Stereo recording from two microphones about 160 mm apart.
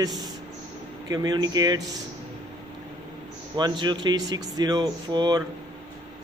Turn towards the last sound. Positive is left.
turn(degrees=-25)  # may be behind; listen again after turning